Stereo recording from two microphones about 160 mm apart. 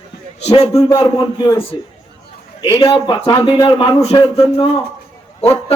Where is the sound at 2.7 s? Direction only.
35° left (ahead or behind).